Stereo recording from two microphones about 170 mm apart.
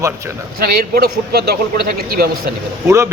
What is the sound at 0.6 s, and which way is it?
A man's voice, 65° right (ahead or behind).